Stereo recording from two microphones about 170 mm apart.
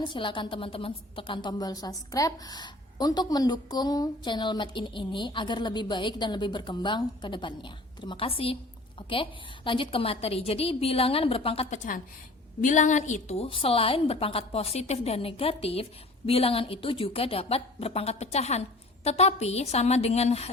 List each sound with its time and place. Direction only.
0.1 s a woman's voice: 30° left (ahead or behind)
12.6 s a woman's voice: 45° left (ahead or behind)